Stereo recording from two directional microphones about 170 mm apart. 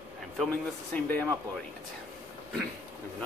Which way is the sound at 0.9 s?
10° left (ahead or behind).